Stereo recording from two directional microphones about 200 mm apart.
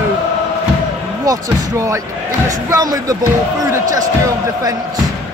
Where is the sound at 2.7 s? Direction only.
15° right (ahead or behind).